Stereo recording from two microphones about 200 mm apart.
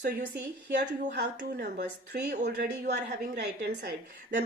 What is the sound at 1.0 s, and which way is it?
Speech, 40° right (ahead or behind).